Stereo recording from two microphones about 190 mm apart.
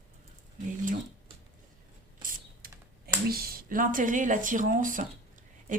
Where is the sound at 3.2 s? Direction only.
50° right (ahead or behind).